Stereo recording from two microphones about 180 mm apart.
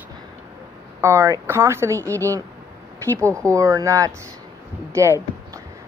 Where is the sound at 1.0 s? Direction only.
15° right (ahead or behind).